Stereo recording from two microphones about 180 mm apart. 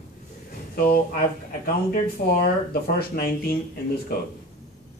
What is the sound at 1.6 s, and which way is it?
Speech, 55° left (ahead or behind).